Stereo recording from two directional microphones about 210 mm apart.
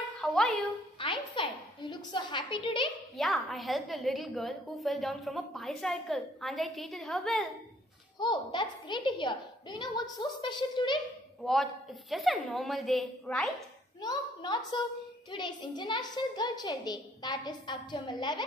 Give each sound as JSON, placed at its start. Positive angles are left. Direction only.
{"t": 0.2, "sound": "music", "side_deg": 0}
{"t": 0.9, "sound": "a woman's voice", "side_deg": 25}
{"t": 3.2, "sound": "a woman's voice", "side_deg": 0}
{"t": 8.2, "sound": "a woman's voice", "side_deg": 20}
{"t": 11.4, "sound": "a woman's voice", "side_deg": 0}
{"t": 14.0, "sound": "a child's voice", "side_deg": 20}